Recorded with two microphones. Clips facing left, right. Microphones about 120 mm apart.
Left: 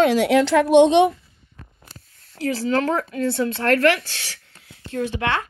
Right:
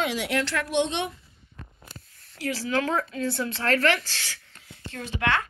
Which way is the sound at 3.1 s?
60° left (ahead or behind).